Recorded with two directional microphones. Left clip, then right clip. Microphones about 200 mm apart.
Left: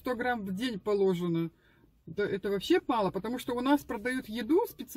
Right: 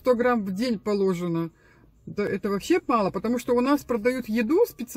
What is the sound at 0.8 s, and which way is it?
Speech, 5° right (ahead or behind).